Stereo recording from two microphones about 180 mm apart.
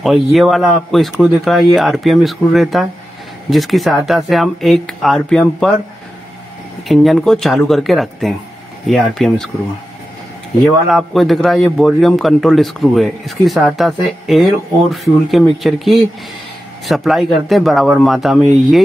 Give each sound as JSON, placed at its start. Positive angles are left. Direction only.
{"t": 0.0, "sound": "a man's voice", "side_deg": 0}
{"t": 6.9, "sound": "a man's voice", "side_deg": 0}
{"t": 10.9, "sound": "a man's voice", "side_deg": 0}